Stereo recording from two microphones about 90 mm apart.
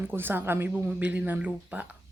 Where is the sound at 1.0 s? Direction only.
15° right (ahead or behind).